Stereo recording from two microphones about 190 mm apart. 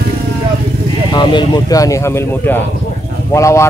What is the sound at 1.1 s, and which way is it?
Speech, 25° left (ahead or behind).